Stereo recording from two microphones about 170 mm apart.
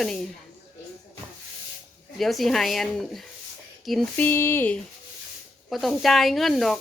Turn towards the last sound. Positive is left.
turn(degrees=0)  # may be behind; listen again after turning